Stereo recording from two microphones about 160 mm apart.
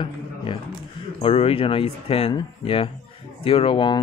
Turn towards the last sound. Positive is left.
turn(degrees=30)  # may be behind; listen again after turning